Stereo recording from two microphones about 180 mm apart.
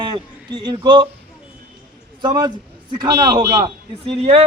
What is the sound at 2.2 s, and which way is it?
A man's voice, 20° right (ahead or behind).